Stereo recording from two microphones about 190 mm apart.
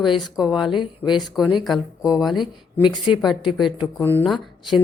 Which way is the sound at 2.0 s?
20° left (ahead or behind).